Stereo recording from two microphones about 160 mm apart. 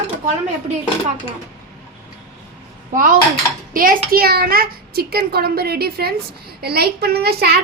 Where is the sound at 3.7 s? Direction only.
60° right (ahead or behind).